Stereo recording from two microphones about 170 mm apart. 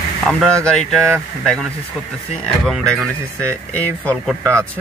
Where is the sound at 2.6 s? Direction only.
5° left (ahead or behind).